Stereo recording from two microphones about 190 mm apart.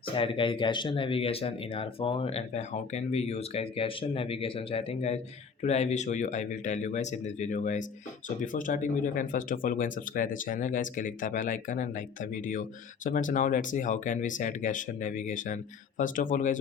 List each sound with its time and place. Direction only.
0.1 s speech: 25° left (ahead or behind); by 16.6 s 45° left (ahead or behind)